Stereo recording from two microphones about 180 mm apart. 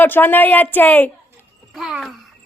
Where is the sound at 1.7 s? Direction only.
Centre (ahead or behind).